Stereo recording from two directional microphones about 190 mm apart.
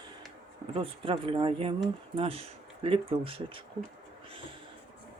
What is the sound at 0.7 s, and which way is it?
Speech, 30° right (ahead or behind).